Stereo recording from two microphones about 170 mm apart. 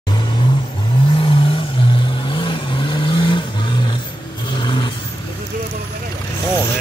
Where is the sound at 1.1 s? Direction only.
30° left (ahead or behind).